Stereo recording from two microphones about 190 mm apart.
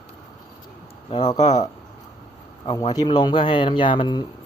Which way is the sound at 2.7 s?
20° left (ahead or behind).